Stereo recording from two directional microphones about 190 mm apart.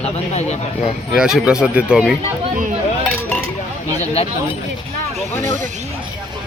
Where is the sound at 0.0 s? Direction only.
35° left (ahead or behind).